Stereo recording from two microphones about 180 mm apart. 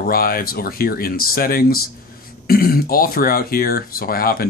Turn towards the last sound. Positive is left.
turn(degrees=55)  # may be behind; listen again after turning